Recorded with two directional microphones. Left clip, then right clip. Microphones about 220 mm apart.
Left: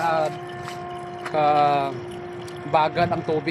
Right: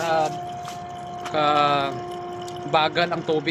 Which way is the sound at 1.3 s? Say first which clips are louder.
Left 1 dB; 25° left (ahead or behind).